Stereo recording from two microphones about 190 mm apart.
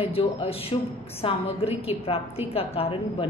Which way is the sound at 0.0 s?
30° left (ahead or behind).